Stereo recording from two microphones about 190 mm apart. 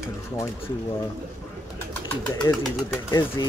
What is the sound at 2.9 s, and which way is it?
Speech, 15° left (ahead or behind).